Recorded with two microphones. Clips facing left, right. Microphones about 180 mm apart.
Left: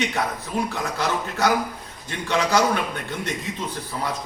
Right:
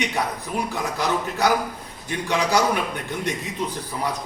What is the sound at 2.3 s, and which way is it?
Speech, 15° right (ahead or behind).